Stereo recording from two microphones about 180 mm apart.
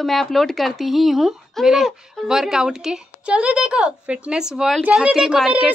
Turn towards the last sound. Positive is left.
turn(degrees=0)  # may be behind; listen again after turning